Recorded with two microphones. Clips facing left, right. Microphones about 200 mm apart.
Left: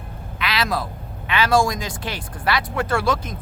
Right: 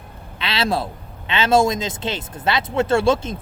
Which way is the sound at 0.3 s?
25° right (ahead or behind).